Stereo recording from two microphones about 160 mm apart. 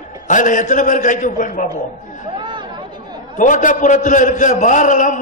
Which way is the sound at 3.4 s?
55° left (ahead or behind).